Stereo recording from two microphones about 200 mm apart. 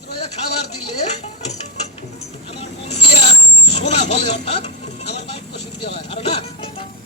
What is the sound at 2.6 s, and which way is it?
Vehicle, 30° left (ahead or behind).